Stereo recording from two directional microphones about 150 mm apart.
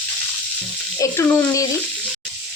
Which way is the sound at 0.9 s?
20° left (ahead or behind).